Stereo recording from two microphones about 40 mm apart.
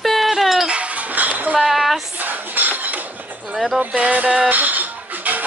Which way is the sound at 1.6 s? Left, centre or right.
Centre.